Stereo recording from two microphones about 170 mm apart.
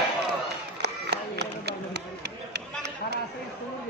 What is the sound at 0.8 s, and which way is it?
Run, 75° right (ahead or behind).